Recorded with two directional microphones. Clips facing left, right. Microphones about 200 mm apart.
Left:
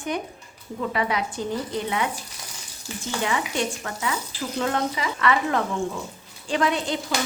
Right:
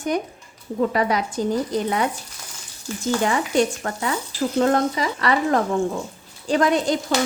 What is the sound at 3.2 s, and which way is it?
A woman's voice, 45° right (ahead or behind).